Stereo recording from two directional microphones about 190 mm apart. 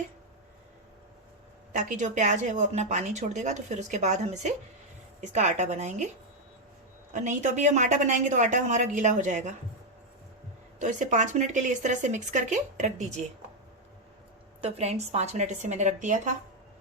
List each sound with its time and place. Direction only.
1.7 s speech: 40° right (ahead or behind)
7.1 s speech: 40° right (ahead or behind)
10.8 s speech: 40° right (ahead or behind)
14.6 s speech: 35° right (ahead or behind)